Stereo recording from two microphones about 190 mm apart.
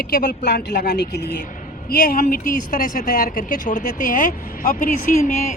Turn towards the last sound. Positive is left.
turn(degrees=40)  # may be behind; listen again after turning